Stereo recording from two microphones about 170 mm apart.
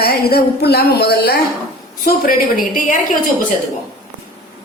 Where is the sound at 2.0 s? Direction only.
55° left (ahead or behind).